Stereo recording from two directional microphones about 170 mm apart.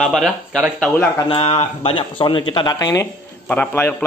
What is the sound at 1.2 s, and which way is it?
Speech, 35° left (ahead or behind).